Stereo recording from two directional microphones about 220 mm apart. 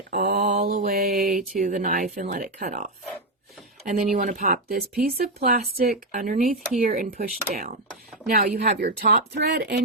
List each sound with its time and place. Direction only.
0.1 s mantra: 45° right (ahead or behind)
0.3 s mantra: 35° right (ahead or behind)
1.5 s speech: 35° right (ahead or behind)